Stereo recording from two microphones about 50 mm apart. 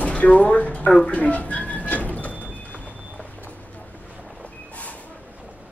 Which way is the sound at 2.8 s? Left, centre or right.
Right.